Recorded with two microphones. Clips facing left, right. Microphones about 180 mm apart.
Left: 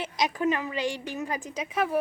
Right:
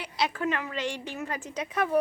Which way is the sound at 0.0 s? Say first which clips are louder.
Left 3 dB; 15° left (ahead or behind).